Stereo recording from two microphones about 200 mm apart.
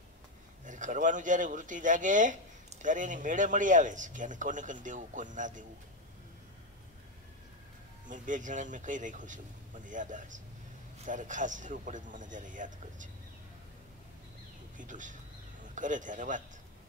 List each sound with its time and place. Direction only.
0.7 s speech: 40° right (ahead or behind)
8.1 s speech: 40° right (ahead or behind)
14.8 s speech: 40° right (ahead or behind)